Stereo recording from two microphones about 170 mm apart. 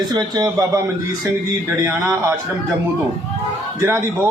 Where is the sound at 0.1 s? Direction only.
25° right (ahead or behind).